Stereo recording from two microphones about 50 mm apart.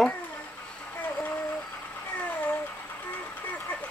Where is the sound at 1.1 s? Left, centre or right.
Left.